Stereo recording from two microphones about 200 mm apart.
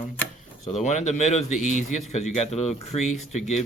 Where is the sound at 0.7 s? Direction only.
35° left (ahead or behind).